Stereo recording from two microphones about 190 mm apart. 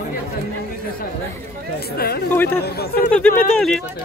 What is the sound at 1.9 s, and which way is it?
Chatter, 55° left (ahead or behind).